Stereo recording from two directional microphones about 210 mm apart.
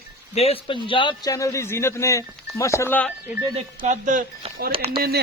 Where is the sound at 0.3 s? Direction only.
30° left (ahead or behind); by 3.1 s 10° left (ahead or behind).